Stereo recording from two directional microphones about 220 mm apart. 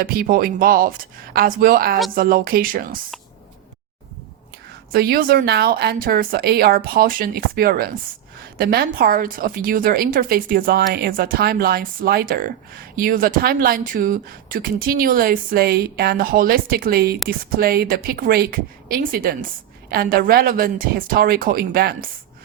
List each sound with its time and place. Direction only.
0.0 s speech: 45° right (ahead or behind)
4.9 s a woman's voice: 45° right (ahead or behind)